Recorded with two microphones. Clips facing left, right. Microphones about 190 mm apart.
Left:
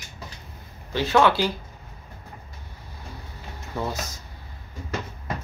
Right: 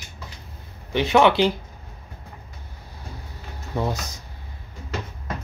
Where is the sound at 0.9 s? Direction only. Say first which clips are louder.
Right 2 dB; 20° right (ahead or behind).